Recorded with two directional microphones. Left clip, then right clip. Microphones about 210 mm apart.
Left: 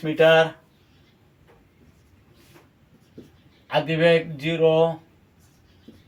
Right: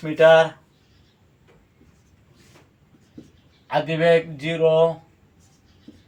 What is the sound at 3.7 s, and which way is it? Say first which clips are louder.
Speech: right 1 dB; 15° left (ahead or behind).